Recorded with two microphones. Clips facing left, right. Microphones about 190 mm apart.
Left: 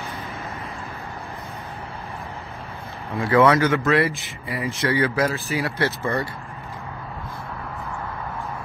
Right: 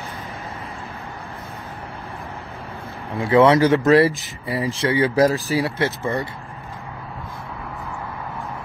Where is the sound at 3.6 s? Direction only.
35° right (ahead or behind).